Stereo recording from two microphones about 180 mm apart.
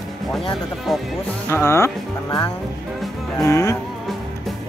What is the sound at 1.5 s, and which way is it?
Speech, 15° left (ahead or behind).